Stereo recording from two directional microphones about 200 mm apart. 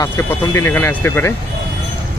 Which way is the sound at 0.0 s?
15° left (ahead or behind).